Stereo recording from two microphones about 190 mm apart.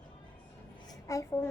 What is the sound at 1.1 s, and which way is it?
Speech, 15° left (ahead or behind).